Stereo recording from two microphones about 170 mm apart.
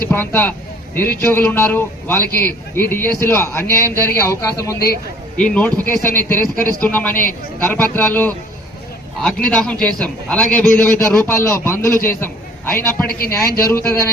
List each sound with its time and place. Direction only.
0.1 s a man's voice: 10° left (ahead or behind)
5.4 s a man's voice: 5° left (ahead or behind)
13.1 s speech: 60° left (ahead or behind)
13.7 s a man's voice: 15° left (ahead or behind)